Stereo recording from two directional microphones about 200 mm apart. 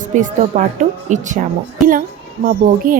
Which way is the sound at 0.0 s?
40° right (ahead or behind).